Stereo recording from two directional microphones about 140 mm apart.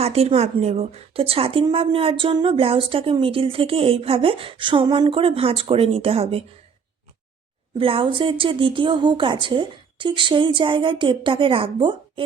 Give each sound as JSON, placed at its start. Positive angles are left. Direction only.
{"t": 0.0, "sound": "speech", "side_deg": -45}
{"t": 7.8, "sound": "speech", "side_deg": -40}